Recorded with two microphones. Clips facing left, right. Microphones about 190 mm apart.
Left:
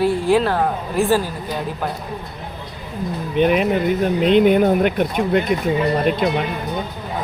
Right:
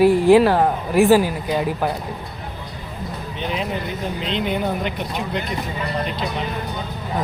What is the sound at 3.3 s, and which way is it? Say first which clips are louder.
Speech: left 10 dB; 60° left (ahead or behind).